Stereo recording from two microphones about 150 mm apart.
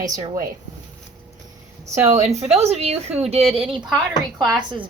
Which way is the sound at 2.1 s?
50° right (ahead or behind).